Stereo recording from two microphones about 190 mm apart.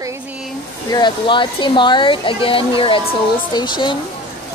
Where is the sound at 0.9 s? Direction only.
25° left (ahead or behind).